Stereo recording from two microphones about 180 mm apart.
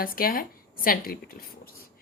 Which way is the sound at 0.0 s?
55° left (ahead or behind).